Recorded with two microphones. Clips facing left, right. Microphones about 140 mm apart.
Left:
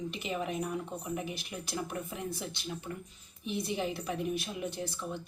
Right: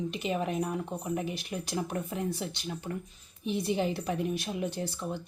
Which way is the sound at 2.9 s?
45° right (ahead or behind).